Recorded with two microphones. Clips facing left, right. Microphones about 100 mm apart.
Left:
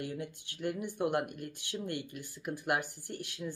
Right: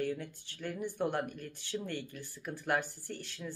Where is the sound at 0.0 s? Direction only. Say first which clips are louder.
Right 3 dB; 15° left (ahead or behind).